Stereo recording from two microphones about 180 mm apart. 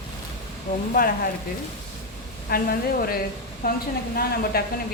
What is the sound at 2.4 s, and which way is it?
A woman's voice, 55° left (ahead or behind).